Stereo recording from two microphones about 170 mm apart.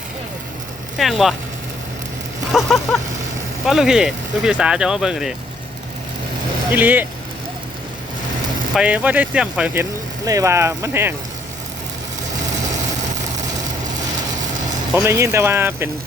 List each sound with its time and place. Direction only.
0.9 s speech: centre (ahead or behind)
2.5 s speech: centre (ahead or behind)
6.7 s speech: 10° right (ahead or behind)
8.7 s speech: 5° right (ahead or behind)
10.2 s speech: 20° right (ahead or behind)
15.0 s speech: 15° right (ahead or behind)